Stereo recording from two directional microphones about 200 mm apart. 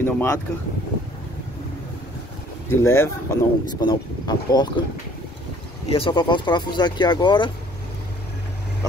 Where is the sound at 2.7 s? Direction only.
10° left (ahead or behind).